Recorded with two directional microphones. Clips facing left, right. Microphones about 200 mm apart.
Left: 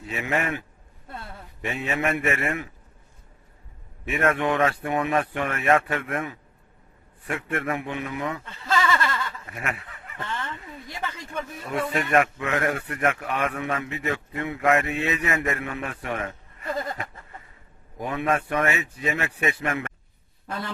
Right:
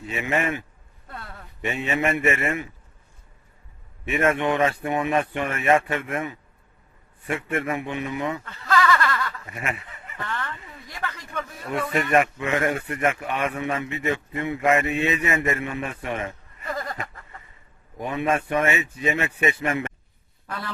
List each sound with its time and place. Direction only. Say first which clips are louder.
0.0 s speech: right 2 dB; centre (ahead or behind)
1.0 s a sound: left 1 dB; 25° left (ahead or behind)
1.6 s speech: right 2 dB; centre (ahead or behind)
4.0 s speech: right 1 dB; centre (ahead or behind)
8.4 s a sound: right 3 dB; 25° left (ahead or behind)
9.5 s speech: right 1 dB; centre (ahead or behind)
10.2 s speech: right 1 dB; 25° left (ahead or behind)
11.7 s speech: right 1 dB; centre (ahead or behind)
18.0 s speech: right 1 dB; centre (ahead or behind)